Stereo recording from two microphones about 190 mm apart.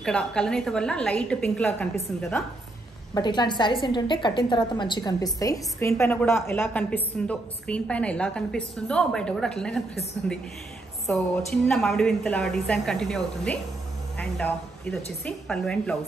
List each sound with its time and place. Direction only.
0.0 s a woman's voice: 5° left (ahead or behind)
3.2 s a woman's voice: 25° left (ahead or behind); by 16.0 s 5° left (ahead or behind)